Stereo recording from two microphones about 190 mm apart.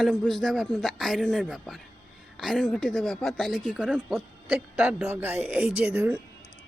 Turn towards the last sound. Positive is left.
turn(degrees=-5)  # may be behind; listen again after turning